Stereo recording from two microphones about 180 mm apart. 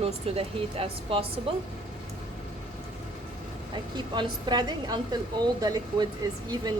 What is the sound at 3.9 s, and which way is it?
Speech, 25° right (ahead or behind).